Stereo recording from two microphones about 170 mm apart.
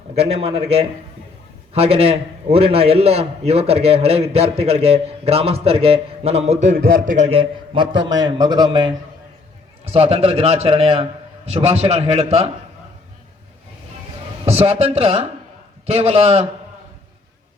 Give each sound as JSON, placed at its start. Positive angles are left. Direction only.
{"t": 0.1, "sound": "a man's voice", "side_deg": -35}
{"t": 6.7, "sound": "a man's voice", "side_deg": -55}
{"t": 7.3, "sound": "a man's voice", "side_deg": -35}
{"t": 9.8, "sound": "a man's voice", "side_deg": -35}
{"t": 14.4, "sound": "a man's voice", "side_deg": -35}